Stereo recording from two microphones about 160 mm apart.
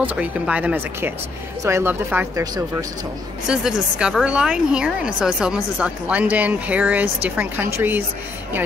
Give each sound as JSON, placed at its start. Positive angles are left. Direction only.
{"t": 0.0, "sound": "speech", "side_deg": -10}
{"t": 3.4, "sound": "speech", "side_deg": -5}